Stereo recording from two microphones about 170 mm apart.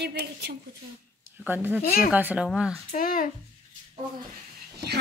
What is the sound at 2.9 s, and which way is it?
Speech, 55° left (ahead or behind).